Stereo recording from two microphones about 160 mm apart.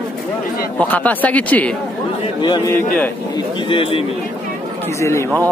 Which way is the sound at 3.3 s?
35° left (ahead or behind).